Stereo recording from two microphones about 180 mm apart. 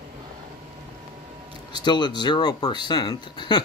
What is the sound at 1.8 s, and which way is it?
Speech, 25° left (ahead or behind).